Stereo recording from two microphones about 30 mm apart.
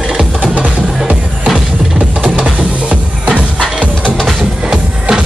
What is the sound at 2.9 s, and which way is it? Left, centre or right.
Music, right.